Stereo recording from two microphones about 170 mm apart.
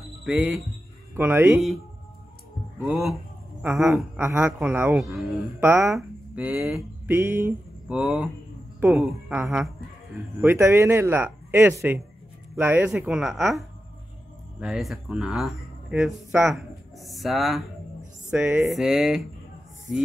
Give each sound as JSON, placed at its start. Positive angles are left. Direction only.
{"t": 0.2, "sound": "speech", "side_deg": -5}
{"t": 2.8, "sound": "speech", "side_deg": -5}
{"t": 5.6, "sound": "speech", "side_deg": -15}
{"t": 7.1, "sound": "a sound", "side_deg": -15}
{"t": 9.0, "sound": "speech", "side_deg": -5}
{"t": 18.3, "sound": "speech", "side_deg": -10}
{"t": 18.7, "sound": "speech", "side_deg": 0}